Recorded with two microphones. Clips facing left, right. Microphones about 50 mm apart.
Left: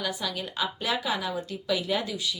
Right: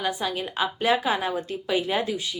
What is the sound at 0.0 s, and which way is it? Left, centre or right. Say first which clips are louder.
A woman's voice: right 4 dB; right.